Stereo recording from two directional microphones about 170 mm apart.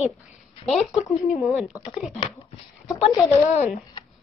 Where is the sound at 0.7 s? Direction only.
Centre (ahead or behind).